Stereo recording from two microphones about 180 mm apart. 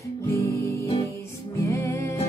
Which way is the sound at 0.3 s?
15° left (ahead or behind).